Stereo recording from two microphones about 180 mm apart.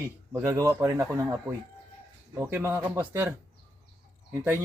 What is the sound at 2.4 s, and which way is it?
Speech, 10° right (ahead or behind).